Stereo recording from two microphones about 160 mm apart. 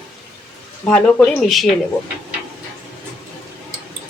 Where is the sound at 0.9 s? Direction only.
5° left (ahead or behind).